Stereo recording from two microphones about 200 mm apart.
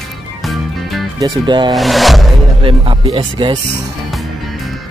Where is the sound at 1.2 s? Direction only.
25° right (ahead or behind).